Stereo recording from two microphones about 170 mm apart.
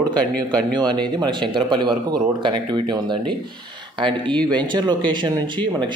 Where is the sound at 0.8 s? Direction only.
25° right (ahead or behind).